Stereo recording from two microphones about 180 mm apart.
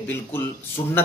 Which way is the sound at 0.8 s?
25° left (ahead or behind).